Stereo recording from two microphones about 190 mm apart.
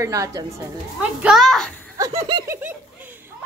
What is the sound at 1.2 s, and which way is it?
Speech, centre (ahead or behind).